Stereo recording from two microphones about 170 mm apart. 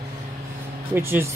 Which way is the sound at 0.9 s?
15° right (ahead or behind).